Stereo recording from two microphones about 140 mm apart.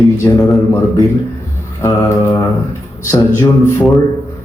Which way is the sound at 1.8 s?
20° left (ahead or behind).